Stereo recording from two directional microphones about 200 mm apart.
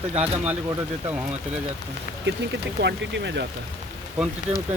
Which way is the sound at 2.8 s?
60° right (ahead or behind).